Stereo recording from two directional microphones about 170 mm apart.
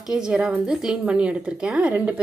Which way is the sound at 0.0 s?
5° right (ahead or behind).